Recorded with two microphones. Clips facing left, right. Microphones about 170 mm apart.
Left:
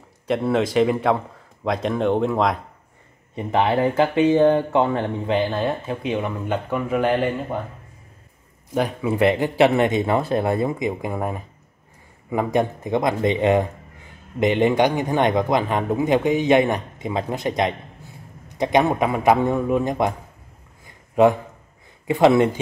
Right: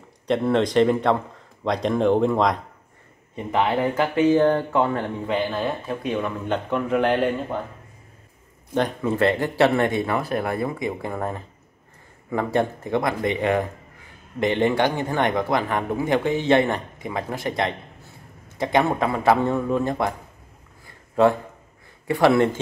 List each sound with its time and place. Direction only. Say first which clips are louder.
0.3 s speech: even; 5° left (ahead or behind)
3.3 s speech: left 2 dB; 25° left (ahead or behind)
6.4 s speech: even; 5° left (ahead or behind)
8.7 s speech: left 1 dB; 10° left (ahead or behind)
20.8 s a sound: left 2 dB; 15° left (ahead or behind)
22.0 s speech: left 2 dB; 20° left (ahead or behind)